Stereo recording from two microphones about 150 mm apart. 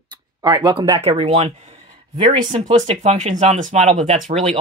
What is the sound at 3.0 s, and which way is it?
Speech, 50° right (ahead or behind).